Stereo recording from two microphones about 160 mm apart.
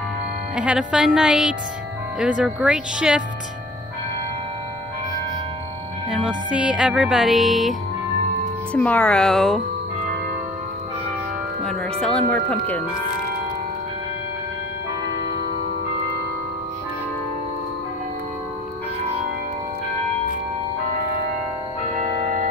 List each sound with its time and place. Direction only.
0.6 s music: 5° right (ahead or behind)
6.0 s music: 5° right (ahead or behind)
8.7 s music: 10° left (ahead or behind)
11.6 s music: 5° left (ahead or behind)